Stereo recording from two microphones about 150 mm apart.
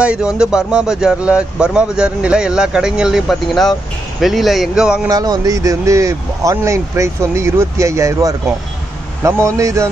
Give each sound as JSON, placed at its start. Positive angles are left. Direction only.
{"t": 0.0, "sound": "a man's voice", "side_deg": -5}
{"t": 5.0, "sound": "speech", "side_deg": -25}